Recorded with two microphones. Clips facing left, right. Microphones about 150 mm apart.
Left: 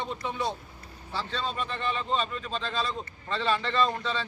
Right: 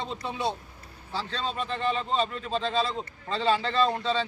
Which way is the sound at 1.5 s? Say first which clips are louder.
Right 6 dB; 30° right (ahead or behind).